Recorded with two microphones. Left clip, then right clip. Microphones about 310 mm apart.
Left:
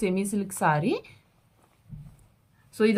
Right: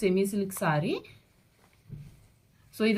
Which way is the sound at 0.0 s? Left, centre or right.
Centre.